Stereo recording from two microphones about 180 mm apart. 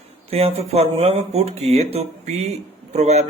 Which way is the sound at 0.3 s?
35° right (ahead or behind).